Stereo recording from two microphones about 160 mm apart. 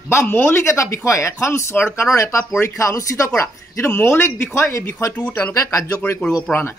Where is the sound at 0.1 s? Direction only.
15° left (ahead or behind).